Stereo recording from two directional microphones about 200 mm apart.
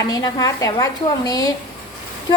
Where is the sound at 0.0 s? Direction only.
20° left (ahead or behind).